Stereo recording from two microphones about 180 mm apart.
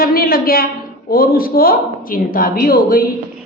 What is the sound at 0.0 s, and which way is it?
A woman's voice, 55° left (ahead or behind).